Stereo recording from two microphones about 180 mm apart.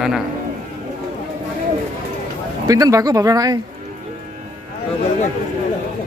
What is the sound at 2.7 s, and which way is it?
Speech, 20° right (ahead or behind).